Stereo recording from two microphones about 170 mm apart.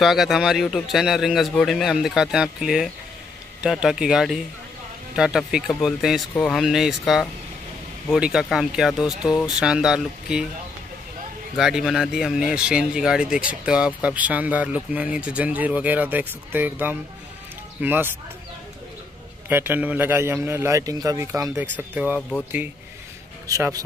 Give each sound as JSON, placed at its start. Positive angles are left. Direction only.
{"t": 0.0, "sound": "a man's voice", "side_deg": 0}
{"t": 11.5, "sound": "speech", "side_deg": 0}
{"t": 19.5, "sound": "speech", "side_deg": -10}
{"t": 23.4, "sound": "a man's voice", "side_deg": -20}